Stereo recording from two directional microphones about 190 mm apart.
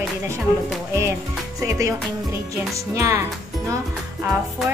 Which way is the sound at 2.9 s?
15° right (ahead or behind).